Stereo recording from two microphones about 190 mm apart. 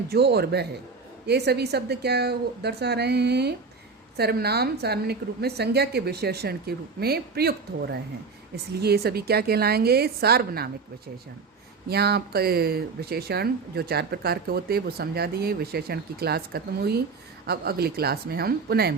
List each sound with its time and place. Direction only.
0.1 s speech: 55° right (ahead or behind)
11.9 s speech: 60° right (ahead or behind)